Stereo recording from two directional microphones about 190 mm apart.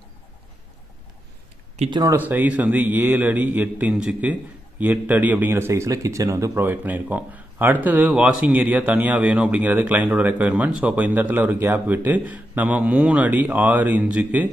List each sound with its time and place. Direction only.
1.9 s a man's voice: 15° right (ahead or behind)